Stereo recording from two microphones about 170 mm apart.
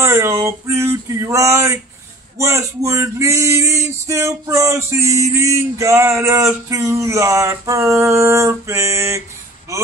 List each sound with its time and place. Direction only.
0.0 s male singing: 15° right (ahead or behind)